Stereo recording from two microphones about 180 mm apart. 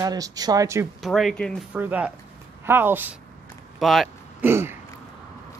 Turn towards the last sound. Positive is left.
turn(degrees=-15)  # may be behind; listen again after turning